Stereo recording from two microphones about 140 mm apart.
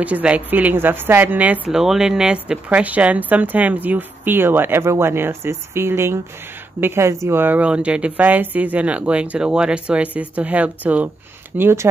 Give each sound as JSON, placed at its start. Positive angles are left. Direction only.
{"t": 0.0, "sound": "a woman's voice", "side_deg": -10}